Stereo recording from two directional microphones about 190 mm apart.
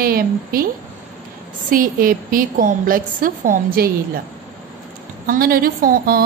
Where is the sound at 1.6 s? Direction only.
45° right (ahead or behind).